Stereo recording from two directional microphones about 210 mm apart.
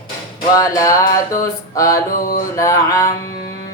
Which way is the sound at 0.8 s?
15° left (ahead or behind).